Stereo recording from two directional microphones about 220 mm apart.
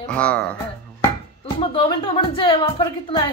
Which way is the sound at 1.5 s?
25° left (ahead or behind).